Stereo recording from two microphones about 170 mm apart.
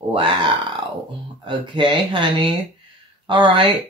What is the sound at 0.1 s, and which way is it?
Speech, 30° right (ahead or behind).